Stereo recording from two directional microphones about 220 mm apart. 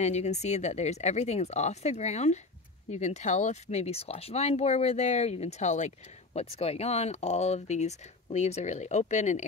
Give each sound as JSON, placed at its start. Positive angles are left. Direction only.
{"t": 0.0, "sound": "speech", "side_deg": 30}